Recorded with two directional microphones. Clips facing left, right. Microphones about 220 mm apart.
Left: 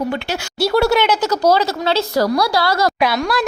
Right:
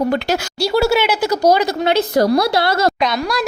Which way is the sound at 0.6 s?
5° right (ahead or behind).